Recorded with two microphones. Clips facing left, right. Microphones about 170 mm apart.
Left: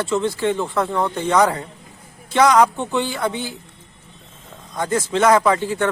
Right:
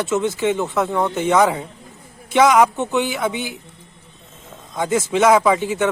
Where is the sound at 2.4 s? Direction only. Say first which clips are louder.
Even; 20° right (ahead or behind).